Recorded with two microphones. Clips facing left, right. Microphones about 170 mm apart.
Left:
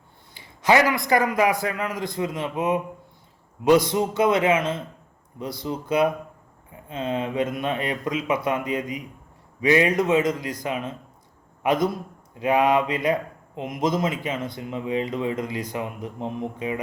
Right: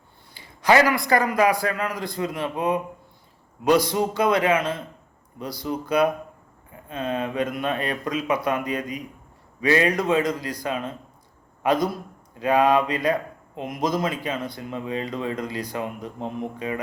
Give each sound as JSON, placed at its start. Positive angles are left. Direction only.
{"t": 0.3, "sound": "speech", "side_deg": 20}